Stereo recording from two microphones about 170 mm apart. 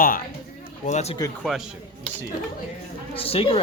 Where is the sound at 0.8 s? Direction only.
40° left (ahead or behind).